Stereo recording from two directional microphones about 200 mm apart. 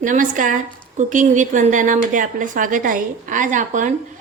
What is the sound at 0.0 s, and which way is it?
A woman's voice, 40° right (ahead or behind).